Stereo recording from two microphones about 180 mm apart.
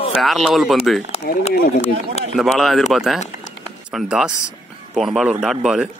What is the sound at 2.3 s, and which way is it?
A man's voice, centre (ahead or behind).